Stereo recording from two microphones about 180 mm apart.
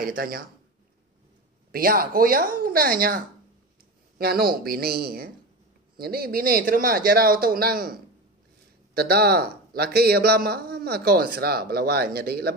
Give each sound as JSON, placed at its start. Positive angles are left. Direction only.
{"t": 0.0, "sound": "speech", "side_deg": -55}
{"t": 1.7, "sound": "a man's voice", "side_deg": -55}